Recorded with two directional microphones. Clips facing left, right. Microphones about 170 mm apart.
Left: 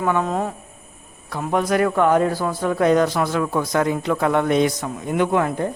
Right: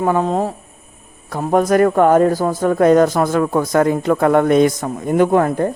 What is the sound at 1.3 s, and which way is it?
Speech, 45° right (ahead or behind).